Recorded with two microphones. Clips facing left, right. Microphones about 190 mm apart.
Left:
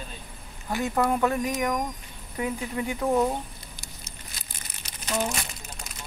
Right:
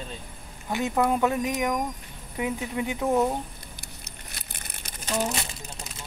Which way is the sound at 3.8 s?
65° right (ahead or behind).